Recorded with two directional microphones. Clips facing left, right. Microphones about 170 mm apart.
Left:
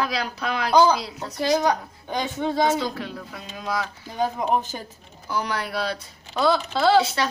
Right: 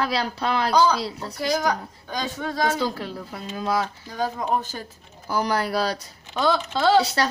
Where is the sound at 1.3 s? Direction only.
25° left (ahead or behind).